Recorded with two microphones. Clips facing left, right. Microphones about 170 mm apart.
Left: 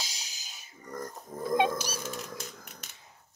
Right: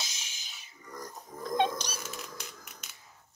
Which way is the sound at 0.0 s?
35° left (ahead or behind).